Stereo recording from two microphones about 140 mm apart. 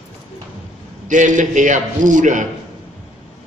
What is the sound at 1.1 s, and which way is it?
A man's voice, 65° right (ahead or behind).